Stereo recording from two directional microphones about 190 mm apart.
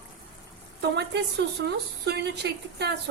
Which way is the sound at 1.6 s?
60° right (ahead or behind).